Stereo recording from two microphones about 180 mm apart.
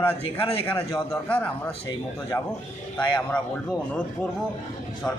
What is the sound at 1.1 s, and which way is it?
Speech, 10° left (ahead or behind).